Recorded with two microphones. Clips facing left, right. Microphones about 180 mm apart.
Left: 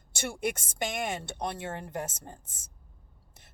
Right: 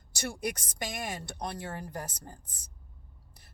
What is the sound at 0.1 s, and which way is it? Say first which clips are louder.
Speech: left 2 dB; 25° left (ahead or behind).